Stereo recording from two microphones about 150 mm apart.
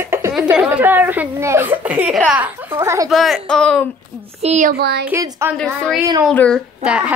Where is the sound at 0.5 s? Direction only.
10° right (ahead or behind).